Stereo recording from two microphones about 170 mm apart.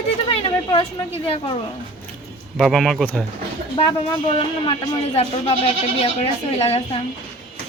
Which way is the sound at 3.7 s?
30° left (ahead or behind).